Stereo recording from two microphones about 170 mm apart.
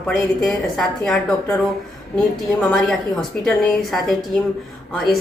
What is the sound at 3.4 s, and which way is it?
Speech, 5° left (ahead or behind).